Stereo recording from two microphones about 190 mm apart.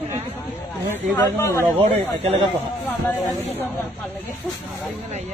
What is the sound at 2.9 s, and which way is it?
Speech, 10° left (ahead or behind).